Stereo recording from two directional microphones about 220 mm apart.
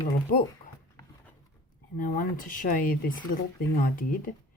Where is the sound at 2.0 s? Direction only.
40° left (ahead or behind).